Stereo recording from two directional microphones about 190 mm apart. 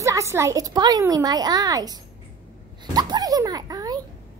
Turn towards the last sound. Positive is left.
turn(degrees=-20)  # may be behind; listen again after turning